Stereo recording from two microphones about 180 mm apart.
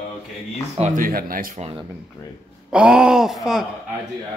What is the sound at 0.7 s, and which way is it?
Speech, 45° right (ahead or behind).